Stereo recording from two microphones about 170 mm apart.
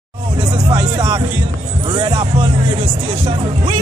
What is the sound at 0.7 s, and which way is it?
Speech, 25° right (ahead or behind).